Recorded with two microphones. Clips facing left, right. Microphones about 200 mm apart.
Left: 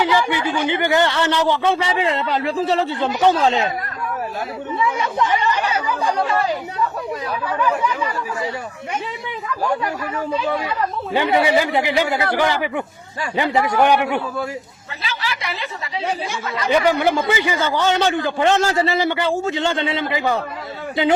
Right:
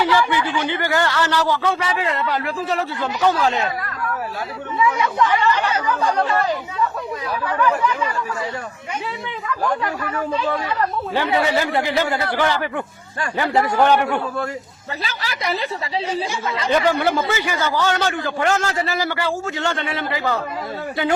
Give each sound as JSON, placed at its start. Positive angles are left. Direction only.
{"t": 0.0, "sound": "a man's voice", "side_deg": 15}
{"t": 4.9, "sound": "speech", "side_deg": 20}
{"t": 9.6, "sound": "speech", "side_deg": 10}
{"t": 15.0, "sound": "speech", "side_deg": -40}
{"t": 16.7, "sound": "a man's voice", "side_deg": 15}